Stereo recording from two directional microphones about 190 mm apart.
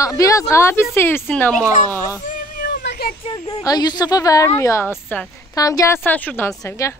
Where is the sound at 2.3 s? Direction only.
50° left (ahead or behind).